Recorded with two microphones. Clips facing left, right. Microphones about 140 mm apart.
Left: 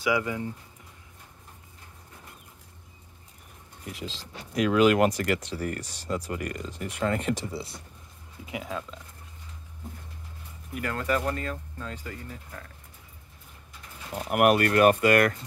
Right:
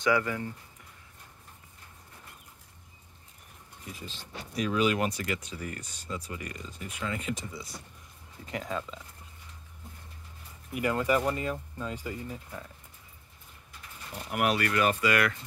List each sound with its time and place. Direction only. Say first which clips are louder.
0.0 s speech: even; 15° left (ahead or behind)
3.8 s speech: left 6 dB; 85° left
5.1 s speech: left 7 dB; 60° left (ahead or behind)
5.6 s speech: left 7 dB; 40° left (ahead or behind)
6.2 s speech: left 7 dB; 55° left (ahead or behind); by 7.0 s 75° left (ahead or behind)
7.0 s speech: left 7 dB; 50° left (ahead or behind)
7.3 s speech: left 6 dB; 65° left (ahead or behind)
8.5 s speech: even; 5° left (ahead or behind)
10.7 s speech: right 1 dB; 10° right (ahead or behind)
14.1 s speech: left 7 dB; 55° left (ahead or behind)